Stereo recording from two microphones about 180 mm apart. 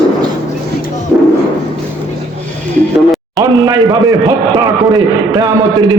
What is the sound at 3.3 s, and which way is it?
A man's voice, 20° right (ahead or behind).